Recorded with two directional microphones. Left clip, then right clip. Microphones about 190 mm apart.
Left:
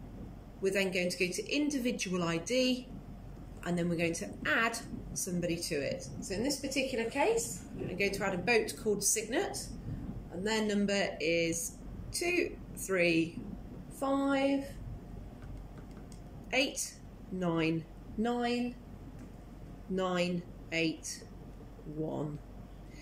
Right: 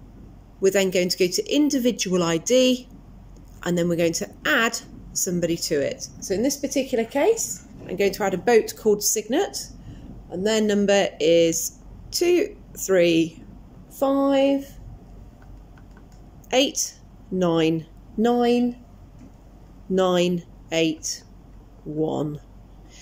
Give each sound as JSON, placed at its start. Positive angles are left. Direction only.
{"t": 0.6, "sound": "speech", "side_deg": -40}
{"t": 16.4, "sound": "speech", "side_deg": -40}
{"t": 20.0, "sound": "speech", "side_deg": -40}